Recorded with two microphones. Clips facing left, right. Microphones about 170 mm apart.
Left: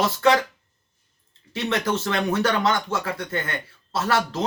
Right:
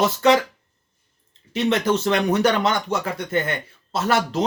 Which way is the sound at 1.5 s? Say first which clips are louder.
Right 4 dB; 20° right (ahead or behind).